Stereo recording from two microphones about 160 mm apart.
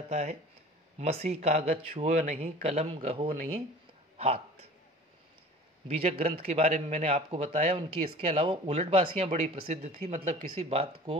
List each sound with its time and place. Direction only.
0.1 s a man's voice: 40° right (ahead or behind)
4.2 s a sound: 40° right (ahead or behind)
5.9 s a man's voice: 40° right (ahead or behind)